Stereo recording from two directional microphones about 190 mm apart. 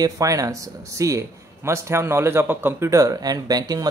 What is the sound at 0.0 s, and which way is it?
Speech, 20° right (ahead or behind).